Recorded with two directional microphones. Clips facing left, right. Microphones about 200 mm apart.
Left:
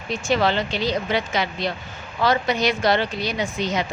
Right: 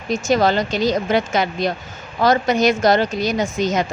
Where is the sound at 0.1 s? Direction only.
40° right (ahead or behind).